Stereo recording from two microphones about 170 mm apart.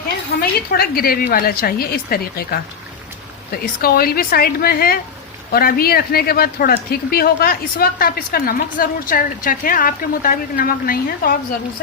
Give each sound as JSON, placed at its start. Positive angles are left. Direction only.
{"t": 0.3, "sound": "a woman's voice", "side_deg": 65}
{"t": 3.8, "sound": "a woman's voice", "side_deg": 60}